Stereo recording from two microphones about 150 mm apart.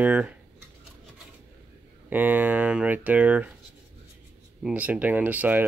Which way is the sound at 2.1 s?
10° right (ahead or behind).